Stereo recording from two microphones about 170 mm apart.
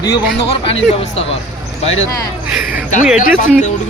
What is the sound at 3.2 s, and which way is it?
Speech, 45° left (ahead or behind).